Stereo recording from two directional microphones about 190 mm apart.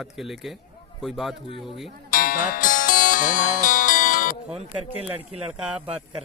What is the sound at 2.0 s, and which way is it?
Music, 45° left (ahead or behind).